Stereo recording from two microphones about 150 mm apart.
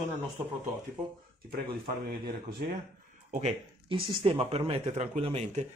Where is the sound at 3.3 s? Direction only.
50° right (ahead or behind).